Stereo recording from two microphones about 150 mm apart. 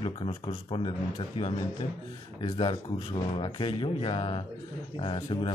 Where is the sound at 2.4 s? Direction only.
30° left (ahead or behind).